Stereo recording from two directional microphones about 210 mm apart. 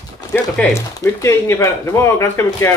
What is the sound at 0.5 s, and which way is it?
Speech, 10° left (ahead or behind).